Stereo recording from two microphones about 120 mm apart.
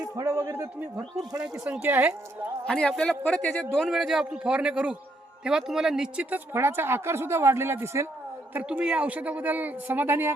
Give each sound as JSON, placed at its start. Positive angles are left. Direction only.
{"t": 0.2, "sound": "speech", "side_deg": -25}
{"t": 2.6, "sound": "a man's voice", "side_deg": 5}
{"t": 3.8, "sound": "speech", "side_deg": 0}